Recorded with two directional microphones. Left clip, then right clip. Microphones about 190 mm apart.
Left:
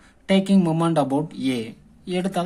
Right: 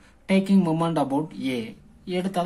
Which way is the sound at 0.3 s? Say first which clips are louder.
Left 2 dB; 20° left (ahead or behind).